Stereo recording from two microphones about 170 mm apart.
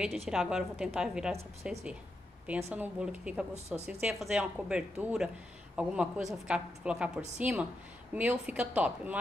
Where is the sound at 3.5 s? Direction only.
40° right (ahead or behind).